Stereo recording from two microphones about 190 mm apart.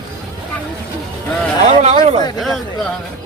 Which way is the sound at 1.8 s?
35° right (ahead or behind).